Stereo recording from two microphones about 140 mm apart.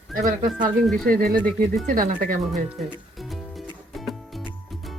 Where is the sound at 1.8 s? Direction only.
75° right (ahead or behind).